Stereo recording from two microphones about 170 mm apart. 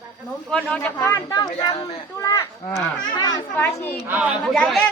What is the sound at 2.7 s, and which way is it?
A woman's voice, 10° left (ahead or behind).